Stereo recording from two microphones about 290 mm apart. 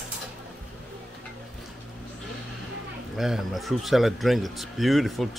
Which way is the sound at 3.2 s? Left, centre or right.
Centre.